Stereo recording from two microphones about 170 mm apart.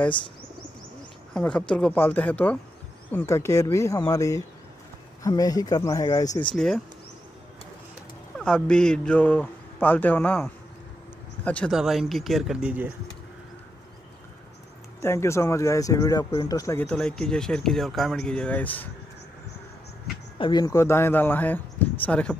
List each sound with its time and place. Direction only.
1.3 s speech: 5° left (ahead or behind)
6.5 s speech: centre (ahead or behind)
8.4 s speech: 5° left (ahead or behind)
15.0 s speech: 15° left (ahead or behind)
16.8 s speech: 5° left (ahead or behind)
20.3 s speech: 25° left (ahead or behind); by 22.4 s 5° left (ahead or behind)